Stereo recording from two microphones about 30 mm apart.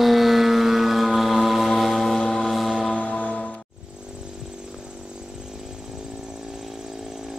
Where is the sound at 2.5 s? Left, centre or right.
Centre.